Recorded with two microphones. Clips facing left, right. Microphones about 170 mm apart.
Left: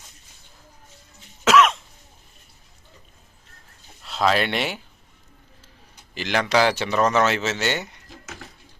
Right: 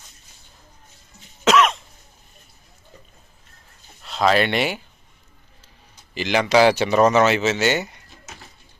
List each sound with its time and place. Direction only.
1.5 s cough: centre (ahead or behind)
4.0 s speech: centre (ahead or behind)
6.1 s speech: 5° right (ahead or behind)
7.1 s speech: 5° right (ahead or behind)